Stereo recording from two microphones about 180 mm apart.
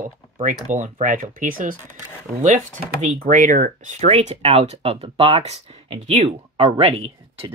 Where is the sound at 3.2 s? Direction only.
45° right (ahead or behind).